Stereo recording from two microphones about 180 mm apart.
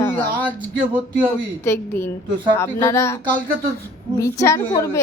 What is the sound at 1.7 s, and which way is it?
A woman's voice, 15° left (ahead or behind).